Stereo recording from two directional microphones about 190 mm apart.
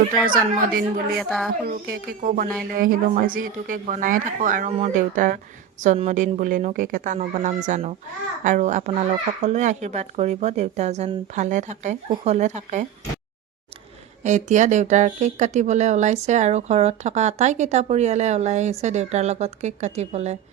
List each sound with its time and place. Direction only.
0.3 s a woman's voice: 50° right (ahead or behind)
14.3 s speech: 40° right (ahead or behind)